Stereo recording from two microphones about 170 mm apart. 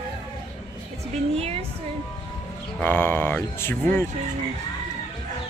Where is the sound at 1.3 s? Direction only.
35° right (ahead or behind).